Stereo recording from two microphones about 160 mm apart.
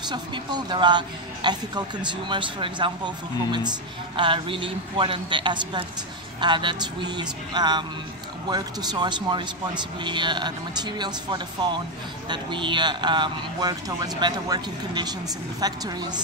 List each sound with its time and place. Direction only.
0.1 s a man's voice: 25° right (ahead or behind)
4.2 s a man's voice: 30° right (ahead or behind)